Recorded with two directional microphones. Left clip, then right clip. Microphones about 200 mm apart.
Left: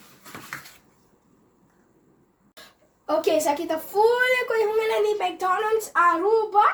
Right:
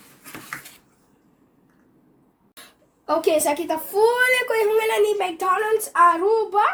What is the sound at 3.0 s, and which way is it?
A child's voice, 50° right (ahead or behind).